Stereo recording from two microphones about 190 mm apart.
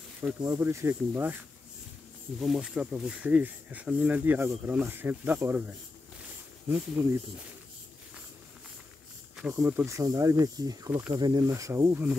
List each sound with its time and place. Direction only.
0.4 s speech: 15° right (ahead or behind)
2.4 s speech: centre (ahead or behind)
7.0 s speech: 10° right (ahead or behind)
9.4 s speech: 10° right (ahead or behind)